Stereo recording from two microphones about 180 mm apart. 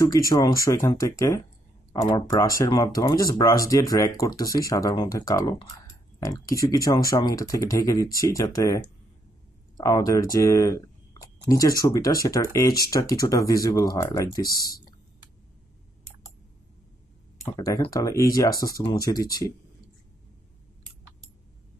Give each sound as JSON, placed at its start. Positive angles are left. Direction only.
{"t": 0.3, "sound": "speech", "side_deg": 20}
{"t": 14.4, "sound": "speech", "side_deg": 55}
{"t": 17.6, "sound": "speech", "side_deg": 20}